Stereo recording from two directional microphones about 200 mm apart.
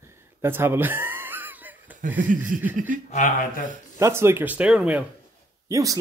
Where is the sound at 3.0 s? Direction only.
40° left (ahead or behind).